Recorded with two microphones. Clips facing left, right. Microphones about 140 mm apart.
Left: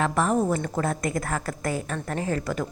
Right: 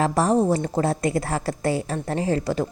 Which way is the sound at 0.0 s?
35° right (ahead or behind).